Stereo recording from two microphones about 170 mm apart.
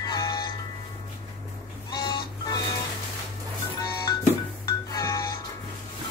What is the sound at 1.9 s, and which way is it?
Chicken, 25° left (ahead or behind).